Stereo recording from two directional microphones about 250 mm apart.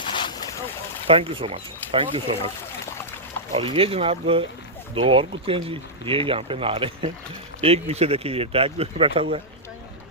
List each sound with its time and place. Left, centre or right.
0.0 s boat: centre
1.0 s speech: right
3.5 s speech: right